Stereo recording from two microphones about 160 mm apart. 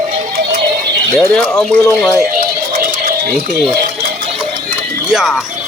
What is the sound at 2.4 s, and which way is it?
Music, 65° right (ahead or behind).